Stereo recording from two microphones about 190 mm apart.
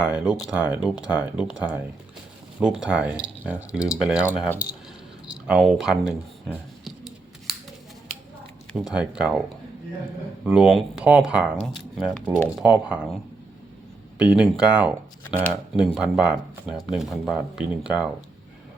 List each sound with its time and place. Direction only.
0.0 s speech: 10° right (ahead or behind)
2.6 s speech: 5° right (ahead or behind)
5.3 s a sound: 5° right (ahead or behind)
8.7 s speech: 5° right (ahead or behind)
10.4 s speech: centre (ahead or behind)
12.6 s speech: 5° right (ahead or behind)
14.2 s speech: 5° right (ahead or behind)